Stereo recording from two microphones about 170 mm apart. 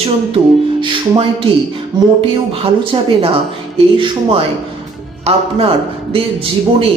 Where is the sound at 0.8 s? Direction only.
30° right (ahead or behind).